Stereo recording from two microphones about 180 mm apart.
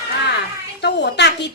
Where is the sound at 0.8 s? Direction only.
70° left (ahead or behind).